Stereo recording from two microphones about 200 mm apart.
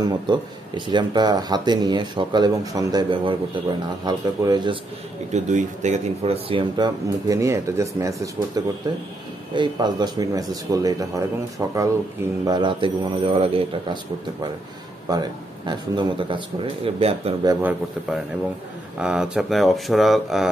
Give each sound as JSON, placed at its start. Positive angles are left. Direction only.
{"t": 0.0, "sound": "speech", "side_deg": -25}
{"t": 5.3, "sound": "speech", "side_deg": -40}
{"t": 12.4, "sound": "speech", "side_deg": -20}
{"t": 15.0, "sound": "speech", "side_deg": -20}
{"t": 17.5, "sound": "speech", "side_deg": -10}